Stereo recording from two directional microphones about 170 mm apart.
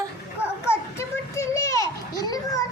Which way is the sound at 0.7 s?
15° left (ahead or behind).